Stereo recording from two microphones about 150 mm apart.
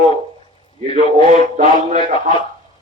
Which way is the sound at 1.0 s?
55° right (ahead or behind).